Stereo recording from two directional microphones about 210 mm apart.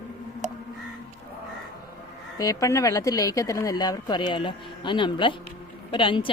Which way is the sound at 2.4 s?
15° left (ahead or behind).